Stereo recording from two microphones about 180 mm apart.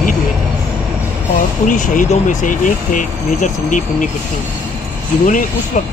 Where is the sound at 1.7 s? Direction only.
45° left (ahead or behind).